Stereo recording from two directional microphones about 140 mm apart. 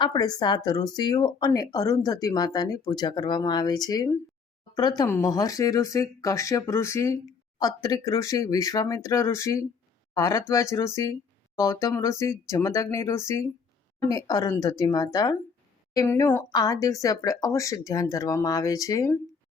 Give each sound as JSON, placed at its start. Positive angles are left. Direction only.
{"t": 0.0, "sound": "speech", "side_deg": 30}
{"t": 16.5, "sound": "speech", "side_deg": 30}